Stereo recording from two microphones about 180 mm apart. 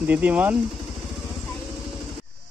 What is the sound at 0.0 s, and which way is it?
Speech, 10° right (ahead or behind).